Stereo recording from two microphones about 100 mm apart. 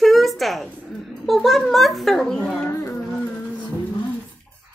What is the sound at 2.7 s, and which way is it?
Music, 25° left (ahead or behind).